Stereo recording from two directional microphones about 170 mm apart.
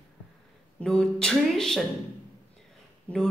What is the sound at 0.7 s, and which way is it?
A woman's voice, 5° left (ahead or behind).